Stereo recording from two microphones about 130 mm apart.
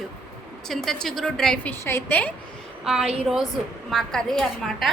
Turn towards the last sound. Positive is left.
turn(degrees=5)  # may be behind; listen again after turning